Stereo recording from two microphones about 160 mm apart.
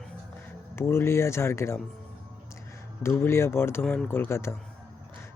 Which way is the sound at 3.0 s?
15° left (ahead or behind).